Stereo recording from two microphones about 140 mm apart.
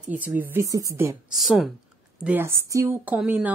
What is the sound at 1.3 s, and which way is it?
Speech, centre (ahead or behind).